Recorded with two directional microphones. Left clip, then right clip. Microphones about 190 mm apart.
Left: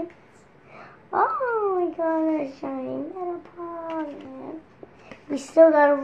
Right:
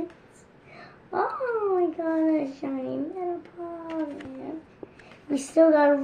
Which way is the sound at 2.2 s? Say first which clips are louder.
Even; 10° right (ahead or behind).